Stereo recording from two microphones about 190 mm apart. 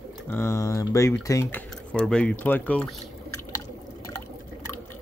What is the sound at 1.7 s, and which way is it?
Speech, 5° left (ahead or behind).